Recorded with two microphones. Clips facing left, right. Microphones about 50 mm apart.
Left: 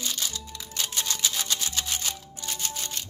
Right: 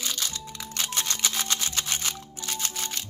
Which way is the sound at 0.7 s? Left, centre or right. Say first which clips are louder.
Right 1 dB; right.